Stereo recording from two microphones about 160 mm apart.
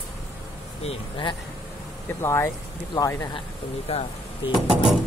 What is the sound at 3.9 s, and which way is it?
Speech, 40° left (ahead or behind).